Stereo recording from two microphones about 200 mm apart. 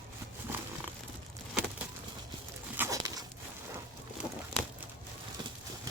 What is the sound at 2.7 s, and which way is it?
Dog, 15° right (ahead or behind).